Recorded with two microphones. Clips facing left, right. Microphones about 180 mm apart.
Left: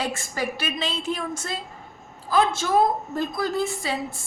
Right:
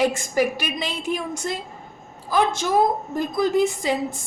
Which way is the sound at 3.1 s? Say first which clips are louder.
Right 5 dB; 15° right (ahead or behind).